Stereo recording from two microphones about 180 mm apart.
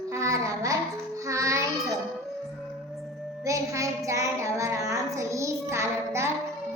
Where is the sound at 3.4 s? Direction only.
15° right (ahead or behind).